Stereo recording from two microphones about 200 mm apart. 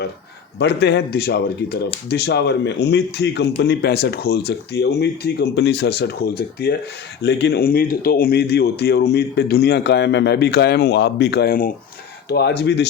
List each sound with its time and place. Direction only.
0.6 s a man's voice: 55° left (ahead or behind)